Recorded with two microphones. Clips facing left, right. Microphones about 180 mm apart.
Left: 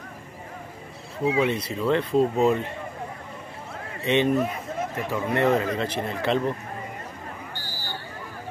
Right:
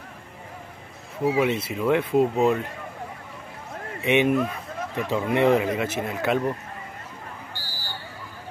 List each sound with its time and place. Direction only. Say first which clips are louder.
1.2 s speech: right 1 dB; 10° right (ahead or behind)
4.0 s speech: right 1 dB; 10° right (ahead or behind)
4.4 s a sound: left 1 dB; 20° left (ahead or behind)
5.1 s speech: right 2 dB; 15° right (ahead or behind)